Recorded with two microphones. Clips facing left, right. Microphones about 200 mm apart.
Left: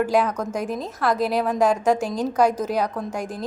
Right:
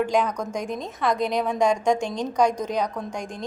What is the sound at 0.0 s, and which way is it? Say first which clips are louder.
A woman's voice: left 2 dB; 5° left (ahead or behind).